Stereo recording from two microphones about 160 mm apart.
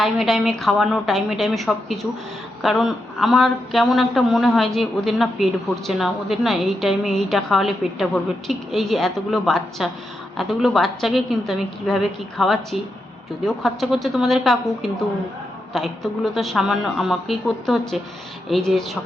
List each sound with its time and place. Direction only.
0.0 s speech: centre (ahead or behind)